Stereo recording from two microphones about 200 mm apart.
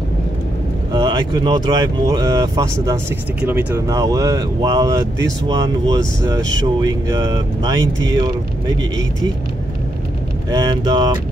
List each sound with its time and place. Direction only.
0.9 s speech: 20° right (ahead or behind)
10.5 s speech: 20° right (ahead or behind)